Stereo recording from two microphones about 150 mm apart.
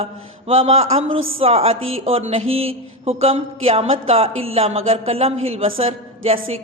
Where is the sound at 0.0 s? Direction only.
40° right (ahead or behind).